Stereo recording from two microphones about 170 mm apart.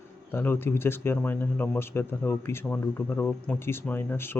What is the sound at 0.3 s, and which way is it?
Speech, 10° left (ahead or behind).